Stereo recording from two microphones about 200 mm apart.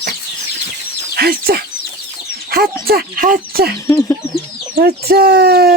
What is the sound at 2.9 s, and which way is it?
Speech, 45° right (ahead or behind).